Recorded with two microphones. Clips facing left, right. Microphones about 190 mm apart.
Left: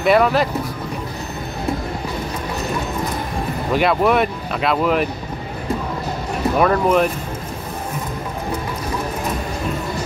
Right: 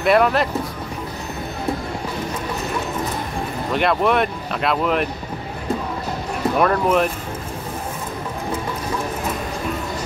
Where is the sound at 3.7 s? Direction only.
5° left (ahead or behind).